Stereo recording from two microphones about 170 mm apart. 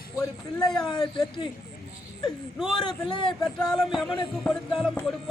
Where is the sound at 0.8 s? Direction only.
25° left (ahead or behind).